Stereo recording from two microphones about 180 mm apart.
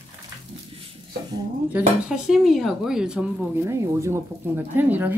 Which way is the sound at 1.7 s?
5° right (ahead or behind).